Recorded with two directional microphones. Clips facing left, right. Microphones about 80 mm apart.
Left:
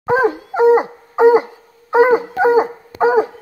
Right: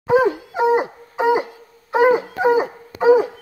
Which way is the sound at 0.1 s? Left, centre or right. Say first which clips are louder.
Left 1 dB; left.